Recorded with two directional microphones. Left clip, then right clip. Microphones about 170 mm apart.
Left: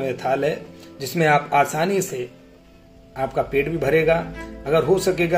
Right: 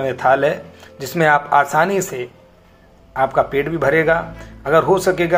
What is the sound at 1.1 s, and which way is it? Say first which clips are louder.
Speech: right 4 dB; 45° right (ahead or behind).